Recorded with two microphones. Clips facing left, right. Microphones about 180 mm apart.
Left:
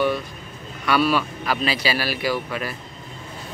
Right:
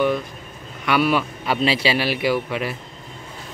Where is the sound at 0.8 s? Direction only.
20° right (ahead or behind).